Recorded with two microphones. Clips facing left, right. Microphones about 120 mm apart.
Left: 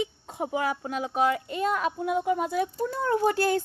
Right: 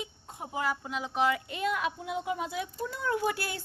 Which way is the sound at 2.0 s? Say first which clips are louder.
Left 7 dB; 50° left (ahead or behind).